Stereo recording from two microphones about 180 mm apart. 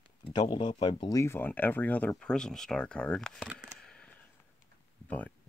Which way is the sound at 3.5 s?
15° right (ahead or behind).